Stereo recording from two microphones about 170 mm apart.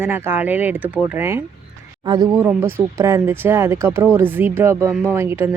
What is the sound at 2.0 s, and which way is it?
Speech, 25° right (ahead or behind).